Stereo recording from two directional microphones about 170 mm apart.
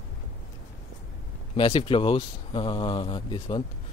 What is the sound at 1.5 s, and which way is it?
Speech, 30° left (ahead or behind).